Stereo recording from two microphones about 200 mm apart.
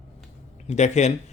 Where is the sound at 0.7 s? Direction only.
35° left (ahead or behind).